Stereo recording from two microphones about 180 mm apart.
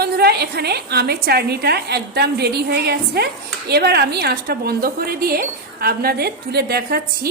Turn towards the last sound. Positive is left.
turn(degrees=-60)  # may be behind; listen again after turning